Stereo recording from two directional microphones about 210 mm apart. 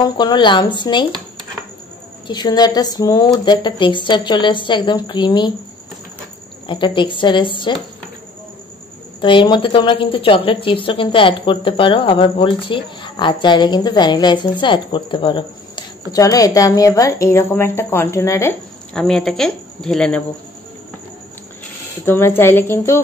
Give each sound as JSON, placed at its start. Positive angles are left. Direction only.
{"t": 0.0, "sound": "a woman's voice", "side_deg": 20}
{"t": 2.2, "sound": "a woman's voice", "side_deg": 20}
{"t": 6.7, "sound": "a woman's voice", "side_deg": 25}
{"t": 9.2, "sound": "a woman's voice", "side_deg": 20}
{"t": 18.9, "sound": "speech", "side_deg": 5}
{"t": 22.0, "sound": "a woman's voice", "side_deg": 10}